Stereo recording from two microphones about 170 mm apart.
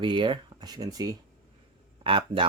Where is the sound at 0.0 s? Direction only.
30° right (ahead or behind).